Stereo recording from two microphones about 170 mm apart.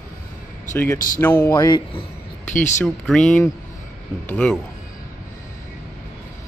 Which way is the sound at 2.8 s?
5° left (ahead or behind).